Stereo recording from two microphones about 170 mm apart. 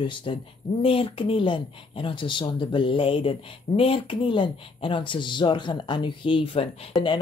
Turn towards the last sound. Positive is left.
turn(degrees=30)  # may be behind; listen again after turning